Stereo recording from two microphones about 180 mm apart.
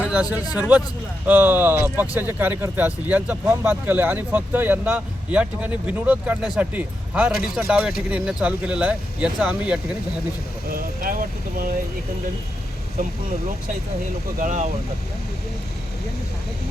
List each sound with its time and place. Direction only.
0.0 s a sound: 5° right (ahead or behind)
0.5 s speech: 10° right (ahead or behind)
10.7 s speech: 55° right (ahead or behind)
14.3 s speech: 45° right (ahead or behind)